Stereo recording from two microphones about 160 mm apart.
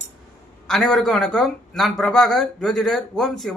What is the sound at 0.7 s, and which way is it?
Speech, centre (ahead or behind).